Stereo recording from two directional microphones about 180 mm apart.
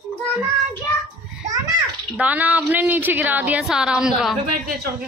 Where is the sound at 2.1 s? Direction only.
10° right (ahead or behind).